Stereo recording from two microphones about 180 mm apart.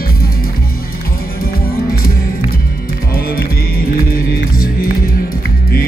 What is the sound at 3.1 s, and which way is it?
Music, 55° left (ahead or behind).